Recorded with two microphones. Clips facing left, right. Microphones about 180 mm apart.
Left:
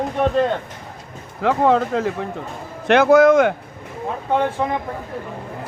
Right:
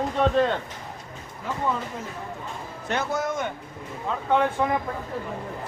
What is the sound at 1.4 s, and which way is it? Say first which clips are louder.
A man's voice: left 12 dB; 80° left.